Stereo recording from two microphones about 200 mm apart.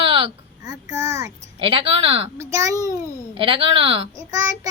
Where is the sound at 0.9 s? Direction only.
15° right (ahead or behind).